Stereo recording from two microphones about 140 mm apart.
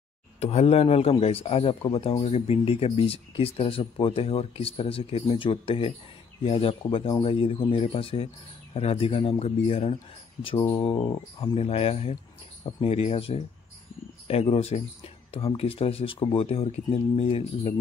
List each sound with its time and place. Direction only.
0.4 s speech: 45° left (ahead or behind)
11.1 s speech: 30° left (ahead or behind)
11.5 s speech: 45° left (ahead or behind)